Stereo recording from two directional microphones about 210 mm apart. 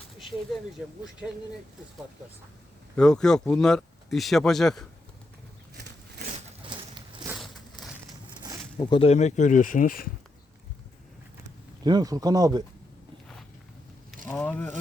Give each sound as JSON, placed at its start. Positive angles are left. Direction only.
{"t": 1.2, "sound": "speech", "side_deg": 0}
{"t": 2.9, "sound": "speech", "side_deg": 5}
{"t": 7.3, "sound": "crushing", "side_deg": 0}
{"t": 8.8, "sound": "speech", "side_deg": 25}
{"t": 11.8, "sound": "speech", "side_deg": -20}
{"t": 14.3, "sound": "speech", "side_deg": 10}